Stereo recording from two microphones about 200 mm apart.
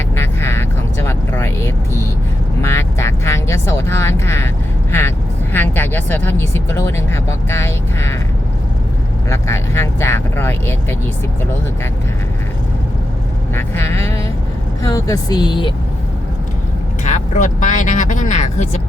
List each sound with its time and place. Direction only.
0.2 s vehicle: 10° left (ahead or behind)
2.6 s music: 15° left (ahead or behind)
4.9 s vehicle: 10° left (ahead or behind)
5.5 s speech: 10° left (ahead or behind)
9.3 s speech: 15° left (ahead or behind)
13.5 s speech: 10° left (ahead or behind)
17.0 s vehicle: 40° left (ahead or behind)